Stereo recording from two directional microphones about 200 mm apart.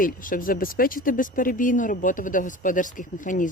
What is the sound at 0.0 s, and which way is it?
Speech, 45° left (ahead or behind).